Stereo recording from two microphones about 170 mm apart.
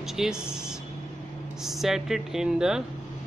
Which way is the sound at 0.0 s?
5° right (ahead or behind).